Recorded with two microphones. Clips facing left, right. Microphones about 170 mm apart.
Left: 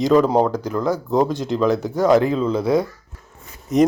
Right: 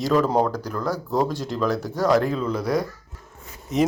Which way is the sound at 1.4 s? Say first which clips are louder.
Left 5 dB; centre (ahead or behind).